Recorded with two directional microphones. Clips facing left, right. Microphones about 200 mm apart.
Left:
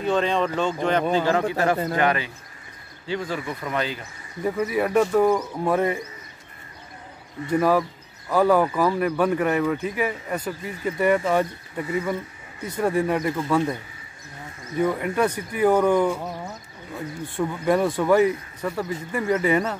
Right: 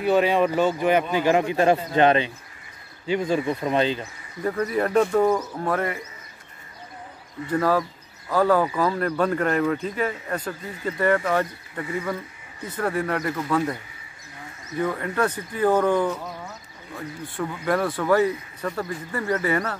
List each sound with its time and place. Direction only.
0.0 s speech: 10° right (ahead or behind)
4.5 s speech: 10° left (ahead or behind)
5.6 s speech: 15° left (ahead or behind)
7.4 s speech: 15° left (ahead or behind)
14.8 s speech: 15° left (ahead or behind)